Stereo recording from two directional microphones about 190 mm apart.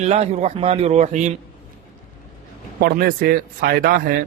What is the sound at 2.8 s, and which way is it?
Speech, 50° right (ahead or behind).